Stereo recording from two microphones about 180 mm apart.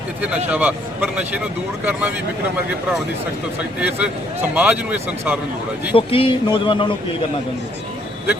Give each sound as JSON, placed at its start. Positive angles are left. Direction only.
{"t": 0.4, "sound": "a man's voice", "side_deg": -10}
{"t": 3.6, "sound": "a man's voice", "side_deg": -10}
{"t": 5.9, "sound": "speech", "side_deg": 30}